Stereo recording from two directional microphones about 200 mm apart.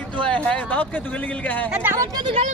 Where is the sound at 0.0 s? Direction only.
5° left (ahead or behind).